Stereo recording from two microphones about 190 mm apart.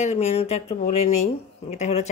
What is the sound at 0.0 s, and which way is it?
Speech, 35° left (ahead or behind).